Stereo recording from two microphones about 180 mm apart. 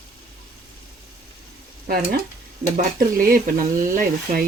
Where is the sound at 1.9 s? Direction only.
55° right (ahead or behind).